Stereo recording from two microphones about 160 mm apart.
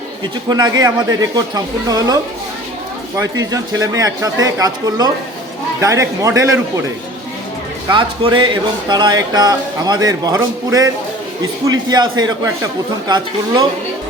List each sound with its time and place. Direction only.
0.4 s a man's voice: 25° right (ahead or behind)
3.2 s a man's voice: 20° right (ahead or behind)
7.9 s a man's voice: 30° right (ahead or behind)